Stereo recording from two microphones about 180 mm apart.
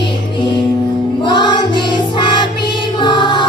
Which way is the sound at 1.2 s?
25° left (ahead or behind).